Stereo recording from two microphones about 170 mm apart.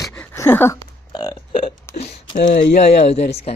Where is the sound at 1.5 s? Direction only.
35° left (ahead or behind).